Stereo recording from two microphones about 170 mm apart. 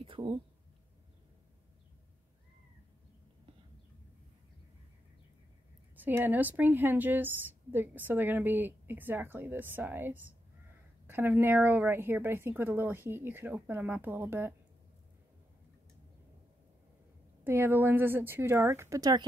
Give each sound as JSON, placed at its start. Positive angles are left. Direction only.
{"t": 0.0, "sound": "a sound", "side_deg": -30}
{"t": 5.9, "sound": "a woman's voice", "side_deg": -10}
{"t": 17.4, "sound": "a woman's voice", "side_deg": -10}